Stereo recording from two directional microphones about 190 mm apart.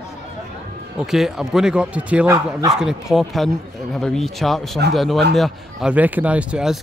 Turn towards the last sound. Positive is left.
turn(degrees=-5)  # may be behind; listen again after turning